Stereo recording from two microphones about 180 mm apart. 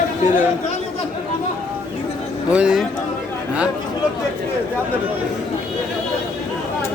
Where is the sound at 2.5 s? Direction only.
5° right (ahead or behind).